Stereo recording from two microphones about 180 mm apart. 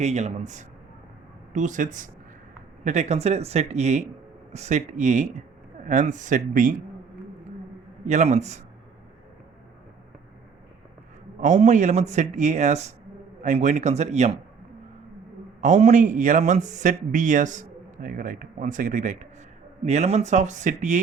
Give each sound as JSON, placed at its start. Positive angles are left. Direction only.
{"t": 0.0, "sound": "a man's voice", "side_deg": -40}
{"t": 8.0, "sound": "a man's voice", "side_deg": -40}
{"t": 11.3, "sound": "a man's voice", "side_deg": -45}
{"t": 15.6, "sound": "a man's voice", "side_deg": -45}